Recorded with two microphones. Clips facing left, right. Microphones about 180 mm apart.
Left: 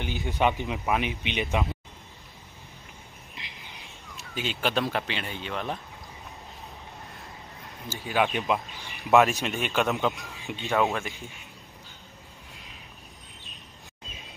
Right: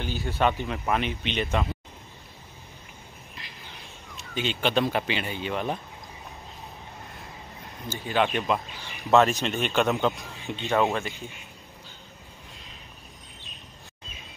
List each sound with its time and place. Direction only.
0.0 s speech: 20° left (ahead or behind)
3.4 s a sound: 20° left (ahead or behind)
4.2 s speech: 5° left (ahead or behind)
7.9 s speech: 5° left (ahead or behind)